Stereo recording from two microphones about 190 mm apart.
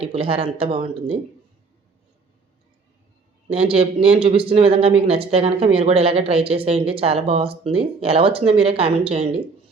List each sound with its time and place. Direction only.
0.1 s speech: 30° right (ahead or behind)
3.5 s speech: 30° right (ahead or behind)